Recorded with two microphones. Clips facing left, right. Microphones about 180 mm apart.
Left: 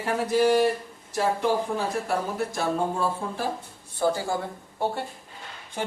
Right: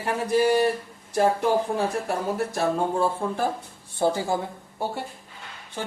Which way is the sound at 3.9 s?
25° right (ahead or behind).